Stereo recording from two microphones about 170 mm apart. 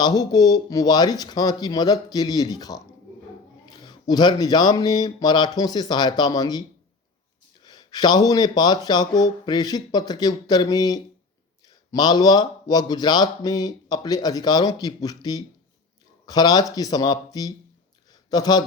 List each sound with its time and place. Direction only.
0.0 s speech: 25° left (ahead or behind)
3.8 s speech: 25° left (ahead or behind)
18.1 s a sound: 25° left (ahead or behind)